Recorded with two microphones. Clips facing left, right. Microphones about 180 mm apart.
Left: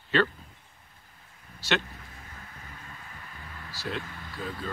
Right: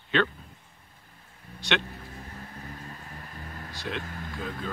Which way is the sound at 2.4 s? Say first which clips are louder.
Right 6 dB; 35° right (ahead or behind).